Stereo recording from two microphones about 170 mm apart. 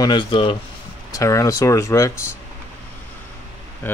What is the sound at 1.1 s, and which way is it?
Speech, 20° left (ahead or behind).